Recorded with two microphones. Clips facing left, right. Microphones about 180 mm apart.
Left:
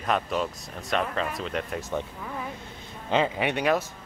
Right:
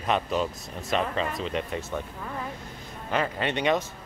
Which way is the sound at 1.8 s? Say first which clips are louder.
Left 2 dB; 15° left (ahead or behind).